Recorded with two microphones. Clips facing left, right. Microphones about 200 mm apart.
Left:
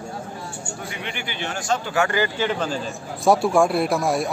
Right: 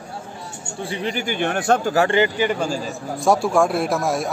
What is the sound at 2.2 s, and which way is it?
A man's voice, 15° right (ahead or behind).